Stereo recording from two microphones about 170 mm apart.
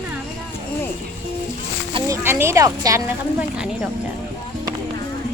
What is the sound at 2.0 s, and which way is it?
Speech, 15° right (ahead or behind).